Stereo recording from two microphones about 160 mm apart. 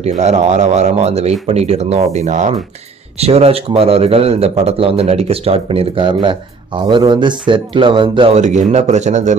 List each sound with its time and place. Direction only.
0.0 s a man's voice: 45° right (ahead or behind)
8.4 s a man's voice: 45° right (ahead or behind)